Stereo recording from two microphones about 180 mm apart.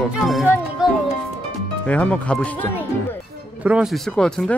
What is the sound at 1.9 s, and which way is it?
Speech, 5° left (ahead or behind).